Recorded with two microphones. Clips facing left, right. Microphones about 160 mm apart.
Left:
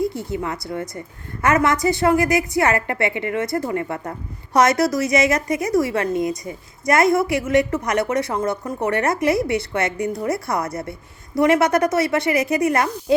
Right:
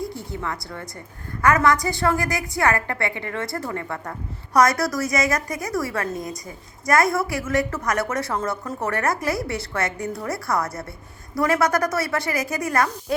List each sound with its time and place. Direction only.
0.3 s a woman's voice: 20° left (ahead or behind)
6.2 s a woman's voice: centre (ahead or behind)
6.8 s a woman's voice: 20° left (ahead or behind)